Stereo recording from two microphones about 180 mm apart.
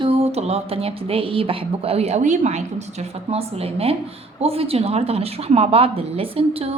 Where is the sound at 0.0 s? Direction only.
35° right (ahead or behind).